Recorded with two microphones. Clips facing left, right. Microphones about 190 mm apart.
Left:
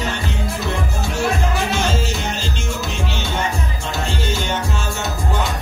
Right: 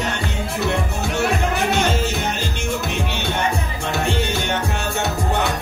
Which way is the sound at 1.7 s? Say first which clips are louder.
Right 1 dB; 60° right (ahead or behind).